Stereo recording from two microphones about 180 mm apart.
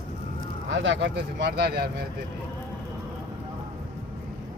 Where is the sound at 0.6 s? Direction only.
90° right; by 1.8 s 65° right (ahead or behind).